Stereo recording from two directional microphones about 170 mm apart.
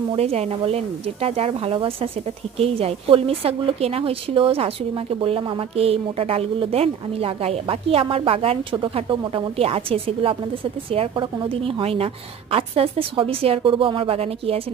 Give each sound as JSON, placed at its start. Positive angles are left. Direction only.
{"t": 0.1, "sound": "a woman's voice", "side_deg": -35}